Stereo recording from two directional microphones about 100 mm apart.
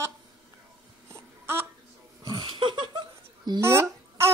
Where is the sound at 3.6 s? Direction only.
25° right (ahead or behind).